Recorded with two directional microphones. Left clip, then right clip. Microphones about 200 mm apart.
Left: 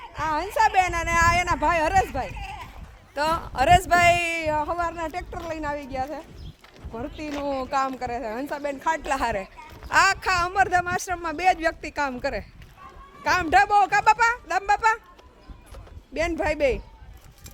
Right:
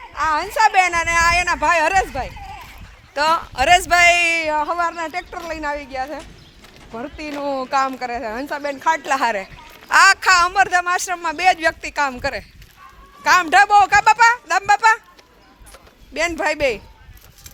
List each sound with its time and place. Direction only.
0.2 s a woman's voice: 15° right (ahead or behind)
9.9 s a man's voice: 5° right (ahead or behind)
16.1 s a man's voice: 5° right (ahead or behind)